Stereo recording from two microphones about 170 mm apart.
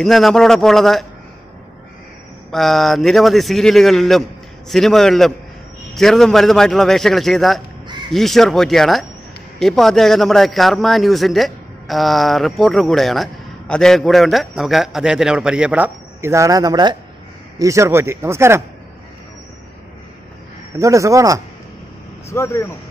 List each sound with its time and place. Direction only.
0.0 s a man's voice: centre (ahead or behind)
2.5 s a man's voice: centre (ahead or behind); by 18.6 s 15° right (ahead or behind)
20.8 s speech: 20° right (ahead or behind)
22.3 s speech: 15° left (ahead or behind)